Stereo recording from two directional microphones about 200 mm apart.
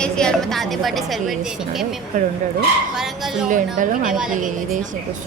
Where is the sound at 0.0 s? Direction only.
5° left (ahead or behind).